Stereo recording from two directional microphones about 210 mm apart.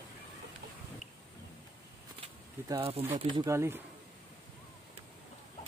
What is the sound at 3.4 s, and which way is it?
Speech, 10° right (ahead or behind).